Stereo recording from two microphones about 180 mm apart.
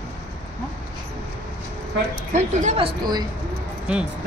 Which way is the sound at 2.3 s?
35° right (ahead or behind).